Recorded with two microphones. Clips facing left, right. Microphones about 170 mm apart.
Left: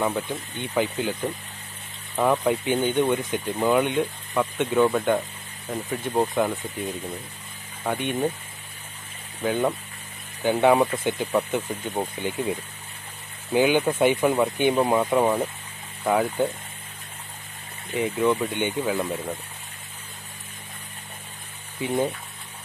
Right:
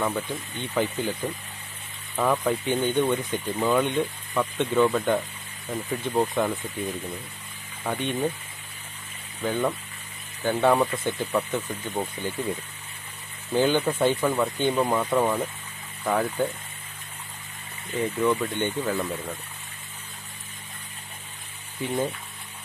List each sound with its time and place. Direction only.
0.6 s speech: 10° left (ahead or behind)
7.8 s speech: 10° left (ahead or behind)
9.4 s speech: 15° left (ahead or behind)
17.9 s speech: 10° left (ahead or behind)
21.8 s speech: 15° left (ahead or behind)